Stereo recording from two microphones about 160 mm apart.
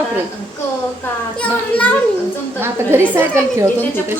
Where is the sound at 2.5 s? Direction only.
15° right (ahead or behind).